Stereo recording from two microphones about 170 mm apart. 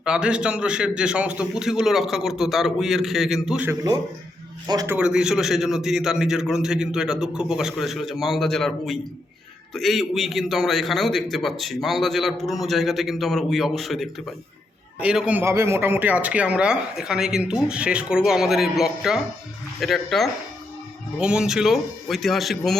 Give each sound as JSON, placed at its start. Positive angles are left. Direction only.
{"t": 0.0, "sound": "a man's voice", "side_deg": -5}
{"t": 4.6, "sound": "speech", "side_deg": -20}
{"t": 4.9, "sound": "a man's voice", "side_deg": -5}